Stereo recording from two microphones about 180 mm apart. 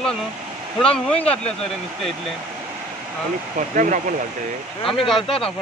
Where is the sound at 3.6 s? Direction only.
45° right (ahead or behind).